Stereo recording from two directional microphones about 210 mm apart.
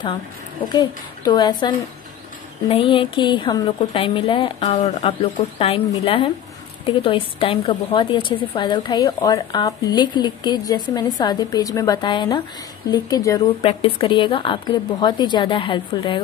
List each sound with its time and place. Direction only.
0.7 s a woman's voice: 20° left (ahead or behind)